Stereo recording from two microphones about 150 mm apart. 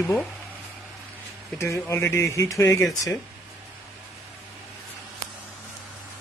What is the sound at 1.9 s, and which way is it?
Speech, 20° left (ahead or behind).